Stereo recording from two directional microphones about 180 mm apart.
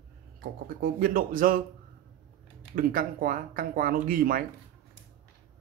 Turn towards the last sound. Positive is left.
turn(degrees=-55)  # may be behind; listen again after turning